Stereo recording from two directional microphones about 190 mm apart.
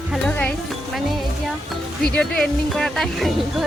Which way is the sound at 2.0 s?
5° left (ahead or behind).